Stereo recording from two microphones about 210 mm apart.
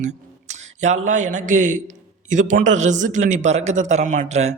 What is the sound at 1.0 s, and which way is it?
A man's voice, 35° right (ahead or behind).